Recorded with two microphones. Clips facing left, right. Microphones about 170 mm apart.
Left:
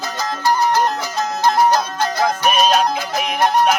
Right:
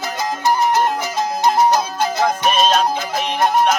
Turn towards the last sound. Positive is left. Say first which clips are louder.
# even
turn(degrees=5)  # may be behind; listen again after turning